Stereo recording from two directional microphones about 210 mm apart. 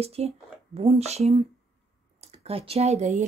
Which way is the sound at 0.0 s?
30° right (ahead or behind).